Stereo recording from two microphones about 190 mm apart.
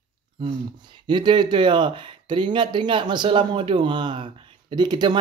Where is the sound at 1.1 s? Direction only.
25° right (ahead or behind).